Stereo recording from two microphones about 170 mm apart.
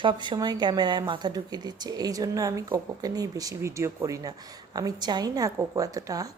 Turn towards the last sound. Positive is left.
turn(degrees=-20)  # may be behind; listen again after turning